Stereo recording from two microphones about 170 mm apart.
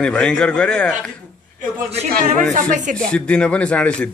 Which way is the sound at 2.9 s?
5° left (ahead or behind).